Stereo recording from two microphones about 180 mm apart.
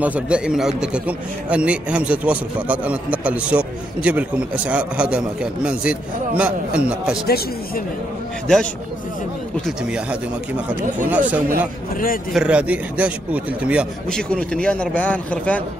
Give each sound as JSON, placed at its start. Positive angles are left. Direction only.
{"t": 0.0, "sound": "a man's voice", "side_deg": -5}
{"t": 7.2, "sound": "speech", "side_deg": 60}
{"t": 9.7, "sound": "a man's voice", "side_deg": -5}
{"t": 14.0, "sound": "speech", "side_deg": 5}